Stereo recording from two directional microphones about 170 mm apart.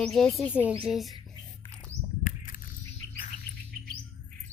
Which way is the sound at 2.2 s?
50° left (ahead or behind).